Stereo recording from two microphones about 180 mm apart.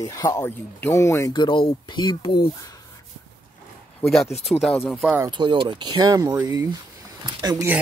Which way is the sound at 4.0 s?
Centre (ahead or behind).